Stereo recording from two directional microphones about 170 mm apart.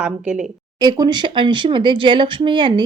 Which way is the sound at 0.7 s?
25° right (ahead or behind).